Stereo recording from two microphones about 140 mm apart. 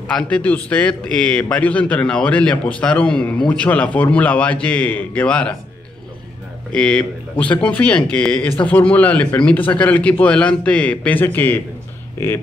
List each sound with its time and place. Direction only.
0.1 s a man's voice: 10° left (ahead or behind)
6.7 s a man's voice: 5° left (ahead or behind)